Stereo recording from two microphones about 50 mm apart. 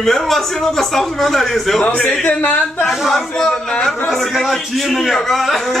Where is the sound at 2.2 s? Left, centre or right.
Left.